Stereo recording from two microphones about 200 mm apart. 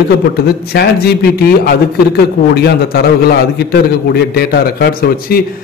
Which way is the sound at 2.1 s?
50° left (ahead or behind).